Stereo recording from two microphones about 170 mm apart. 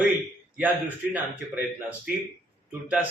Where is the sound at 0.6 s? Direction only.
10° right (ahead or behind).